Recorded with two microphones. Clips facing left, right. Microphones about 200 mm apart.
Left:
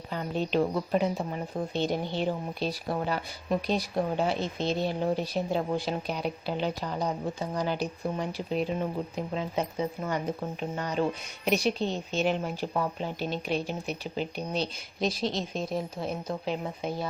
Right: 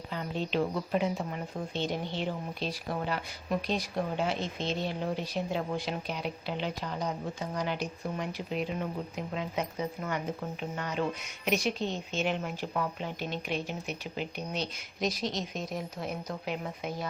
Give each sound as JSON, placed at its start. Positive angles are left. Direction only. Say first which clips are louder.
{"t": 0.1, "sound": "speech", "louder": "left 4 dB", "side_deg": 45}